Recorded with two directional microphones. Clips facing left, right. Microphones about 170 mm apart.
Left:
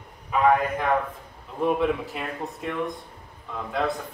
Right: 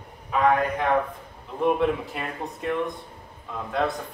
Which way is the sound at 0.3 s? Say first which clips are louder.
Left 1 dB; centre (ahead or behind).